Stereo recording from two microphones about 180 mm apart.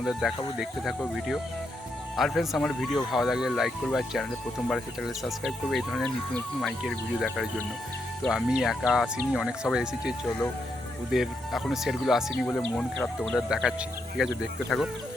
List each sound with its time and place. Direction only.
0.0 s speech: centre (ahead or behind)